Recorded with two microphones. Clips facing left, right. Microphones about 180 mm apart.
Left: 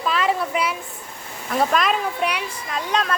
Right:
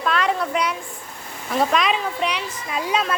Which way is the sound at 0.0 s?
Centre (ahead or behind).